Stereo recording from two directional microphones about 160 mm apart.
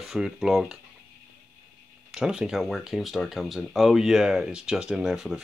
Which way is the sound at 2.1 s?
5° right (ahead or behind).